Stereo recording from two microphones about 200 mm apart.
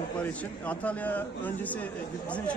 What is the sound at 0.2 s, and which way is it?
A man's voice, 10° left (ahead or behind).